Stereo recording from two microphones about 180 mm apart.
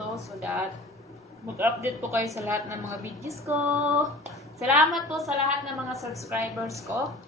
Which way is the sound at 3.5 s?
35° right (ahead or behind).